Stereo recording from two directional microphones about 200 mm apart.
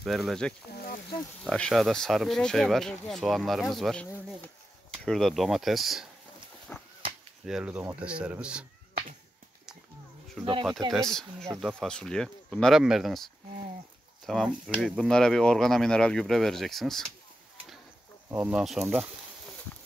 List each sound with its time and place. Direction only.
0.0 s speech: centre (ahead or behind)
0.7 s a sound: 50° left (ahead or behind)
1.4 s speech: 5° left (ahead or behind)
6.7 s a sound: 10° left (ahead or behind)
7.4 s speech: 5° right (ahead or behind)
10.9 s speech: centre (ahead or behind)
18.3 s speech: 5° right (ahead or behind)